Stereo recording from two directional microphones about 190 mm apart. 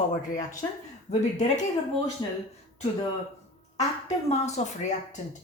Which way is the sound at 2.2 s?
20° left (ahead or behind).